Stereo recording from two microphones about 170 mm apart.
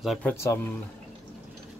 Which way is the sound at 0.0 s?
Centre (ahead or behind).